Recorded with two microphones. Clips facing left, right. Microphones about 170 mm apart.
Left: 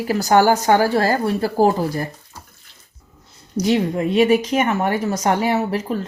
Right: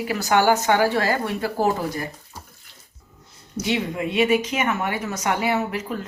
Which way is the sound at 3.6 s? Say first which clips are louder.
Left 6 dB; 40° left (ahead or behind).